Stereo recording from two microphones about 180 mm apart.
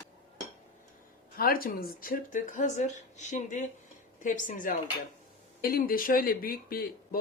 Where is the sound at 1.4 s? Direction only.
55° left (ahead or behind).